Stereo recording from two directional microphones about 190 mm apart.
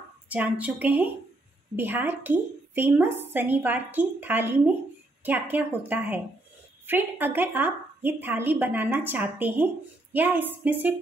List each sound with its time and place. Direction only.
0.3 s a woman's voice: 10° right (ahead or behind)